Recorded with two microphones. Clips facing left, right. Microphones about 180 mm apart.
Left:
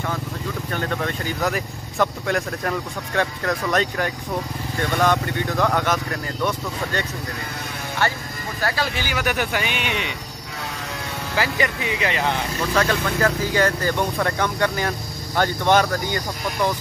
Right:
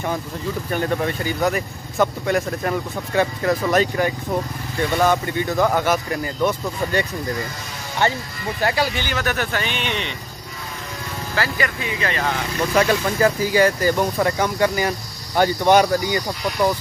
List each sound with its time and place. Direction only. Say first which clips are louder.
0.7 s speech: right 4 dB; 10° right (ahead or behind)
9.0 s speech: even; 10° left (ahead or behind)
11.3 s speech: left 1 dB; 20° left (ahead or behind)
12.7 s speech: right 3 dB; 10° right (ahead or behind)